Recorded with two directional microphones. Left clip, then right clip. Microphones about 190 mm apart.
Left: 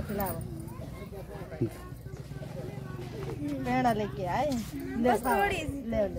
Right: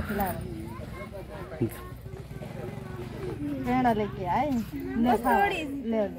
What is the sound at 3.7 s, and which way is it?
Speech, 35° left (ahead or behind).